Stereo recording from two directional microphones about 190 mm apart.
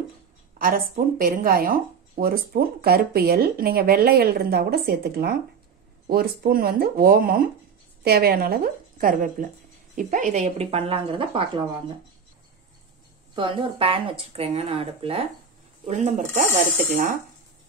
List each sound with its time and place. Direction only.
0.6 s speech: 50° right (ahead or behind); by 11.6 s 30° right (ahead or behind)
13.3 s speech: 25° right (ahead or behind)
15.9 s speech: 40° right (ahead or behind)